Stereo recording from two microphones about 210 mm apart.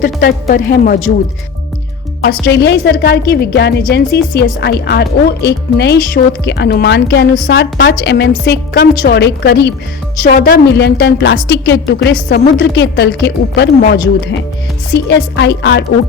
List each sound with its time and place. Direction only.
0.0 s a woman's voice: 45° left (ahead or behind)
2.2 s a woman's voice: 55° left (ahead or behind)
10.2 s a woman's voice: 40° left (ahead or behind); by 15.8 s 60° left (ahead or behind)